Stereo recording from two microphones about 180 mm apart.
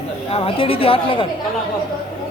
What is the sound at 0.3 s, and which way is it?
A man's voice, 30° left (ahead or behind).